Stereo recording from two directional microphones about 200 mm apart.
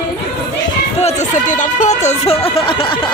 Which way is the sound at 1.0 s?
35° left (ahead or behind).